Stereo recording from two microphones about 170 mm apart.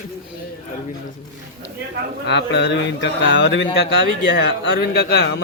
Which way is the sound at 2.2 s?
90° left.